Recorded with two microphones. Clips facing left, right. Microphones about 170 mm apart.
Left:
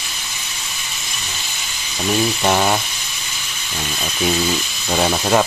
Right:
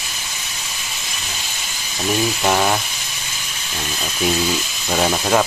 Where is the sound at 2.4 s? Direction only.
5° left (ahead or behind).